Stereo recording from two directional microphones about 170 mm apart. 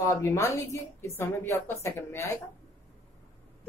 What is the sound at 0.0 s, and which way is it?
A woman's voice, 20° left (ahead or behind).